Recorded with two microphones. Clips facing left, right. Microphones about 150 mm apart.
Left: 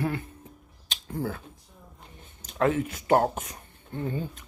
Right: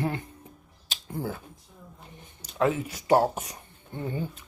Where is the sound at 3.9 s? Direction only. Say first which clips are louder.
Left 1 dB; 15° right (ahead or behind).